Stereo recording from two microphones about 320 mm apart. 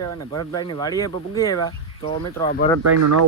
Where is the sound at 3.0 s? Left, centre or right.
Right.